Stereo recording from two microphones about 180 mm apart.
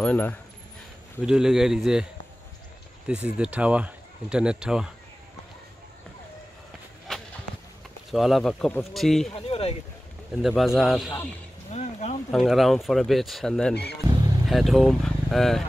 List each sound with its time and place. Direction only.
0.0 s speech: 10° left (ahead or behind)
1.2 s speech: 5° right (ahead or behind)
3.1 s speech: 5° right (ahead or behind)
8.1 s speech: centre (ahead or behind)
9.3 s speech: 35° left (ahead or behind)
10.3 s speech: centre (ahead or behind)
11.7 s a sound: 40° left (ahead or behind)
12.3 s speech: centre (ahead or behind)
14.0 s vehicle: 20° right (ahead or behind)
14.5 s speech: centre (ahead or behind)